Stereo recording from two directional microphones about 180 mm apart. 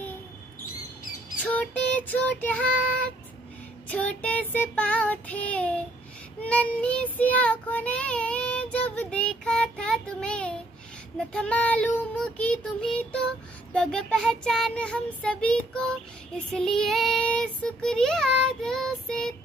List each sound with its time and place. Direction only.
1.4 s child singing: 10° left (ahead or behind)
3.9 s child singing: 10° left (ahead or behind)